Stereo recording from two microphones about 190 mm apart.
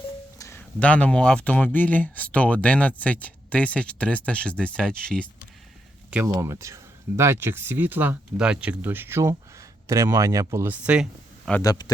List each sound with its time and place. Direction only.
0.3 s speech: 15° left (ahead or behind)
6.1 s speech: 10° right (ahead or behind)
11.6 s a man's voice: 20° left (ahead or behind)